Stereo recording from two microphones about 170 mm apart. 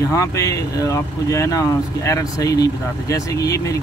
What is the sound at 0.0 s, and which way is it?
Speech, 20° left (ahead or behind).